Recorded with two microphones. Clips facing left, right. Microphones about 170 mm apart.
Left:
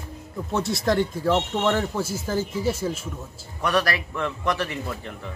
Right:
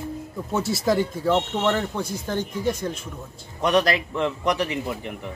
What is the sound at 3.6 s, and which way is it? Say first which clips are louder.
A man's voice: right 3 dB; 20° right (ahead or behind).